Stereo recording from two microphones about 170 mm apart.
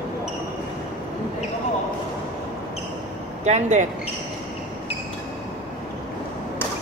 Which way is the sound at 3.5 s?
45° right (ahead or behind).